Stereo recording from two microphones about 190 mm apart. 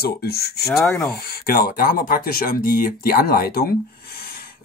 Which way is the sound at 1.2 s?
55° left (ahead or behind).